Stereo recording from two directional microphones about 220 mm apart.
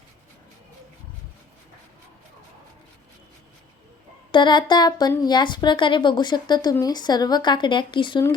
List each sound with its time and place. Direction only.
4.3 s speech: 20° left (ahead or behind)